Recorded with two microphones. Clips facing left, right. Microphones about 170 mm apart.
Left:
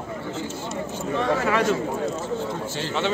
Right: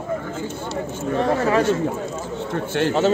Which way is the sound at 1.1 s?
35° right (ahead or behind).